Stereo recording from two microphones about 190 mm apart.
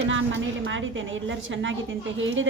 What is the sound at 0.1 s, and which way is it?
A woman's voice, 85° right.